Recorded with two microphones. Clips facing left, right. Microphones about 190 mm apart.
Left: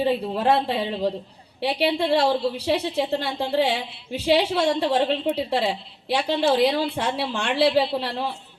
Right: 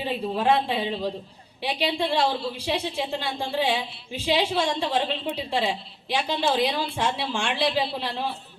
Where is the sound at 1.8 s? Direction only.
65° left (ahead or behind).